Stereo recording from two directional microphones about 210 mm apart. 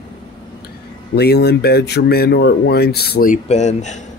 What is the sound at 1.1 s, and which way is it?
Speech, 50° left (ahead or behind).